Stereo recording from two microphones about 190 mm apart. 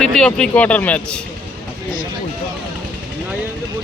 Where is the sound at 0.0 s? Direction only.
5° left (ahead or behind).